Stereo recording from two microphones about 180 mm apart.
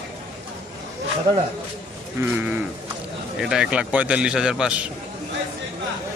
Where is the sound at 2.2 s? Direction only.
15° right (ahead or behind).